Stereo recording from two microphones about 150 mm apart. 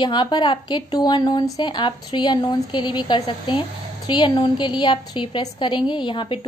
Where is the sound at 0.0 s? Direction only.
30° left (ahead or behind).